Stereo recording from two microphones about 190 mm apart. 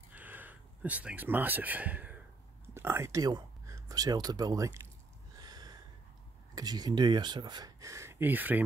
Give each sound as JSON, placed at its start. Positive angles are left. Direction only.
{"t": 0.1, "sound": "a sound", "side_deg": -10}
{"t": 2.6, "sound": "speech", "side_deg": -10}
{"t": 5.4, "sound": "gasp", "side_deg": -20}
{"t": 6.5, "sound": "speech", "side_deg": -20}